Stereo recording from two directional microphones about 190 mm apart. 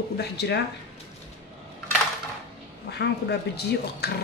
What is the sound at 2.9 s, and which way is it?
Speech, 60° left (ahead or behind).